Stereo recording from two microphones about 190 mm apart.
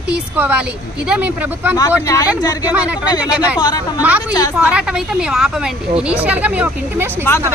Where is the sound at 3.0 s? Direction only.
20° left (ahead or behind).